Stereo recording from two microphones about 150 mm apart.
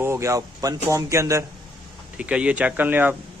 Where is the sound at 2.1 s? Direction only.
10° right (ahead or behind).